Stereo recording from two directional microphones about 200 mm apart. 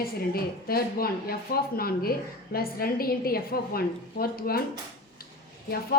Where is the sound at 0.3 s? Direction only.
50° left (ahead or behind).